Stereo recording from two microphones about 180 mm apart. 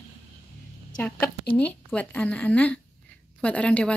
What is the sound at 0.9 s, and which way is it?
Speech, 10° left (ahead or behind).